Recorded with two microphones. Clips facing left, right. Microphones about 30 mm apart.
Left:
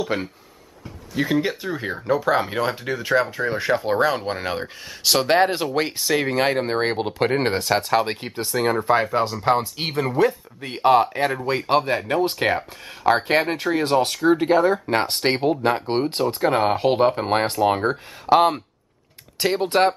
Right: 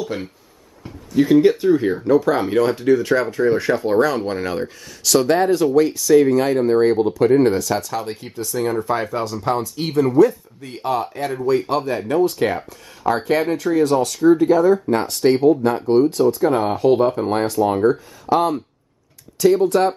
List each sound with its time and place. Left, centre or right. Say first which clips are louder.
0.1 s speech: left 2 dB; left
4.8 s speech: right 3 dB; left